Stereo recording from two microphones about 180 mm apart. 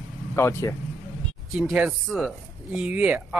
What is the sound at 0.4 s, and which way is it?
Speech, 15° left (ahead or behind).